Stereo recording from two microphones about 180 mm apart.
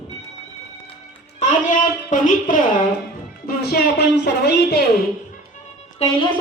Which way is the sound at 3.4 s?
65° left (ahead or behind).